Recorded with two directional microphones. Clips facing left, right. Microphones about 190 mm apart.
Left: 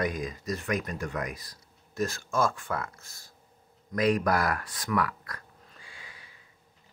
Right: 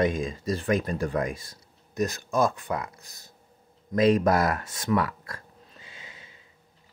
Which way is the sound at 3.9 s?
25° right (ahead or behind).